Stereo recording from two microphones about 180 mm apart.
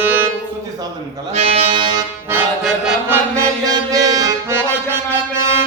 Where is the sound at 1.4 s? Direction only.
35° right (ahead or behind).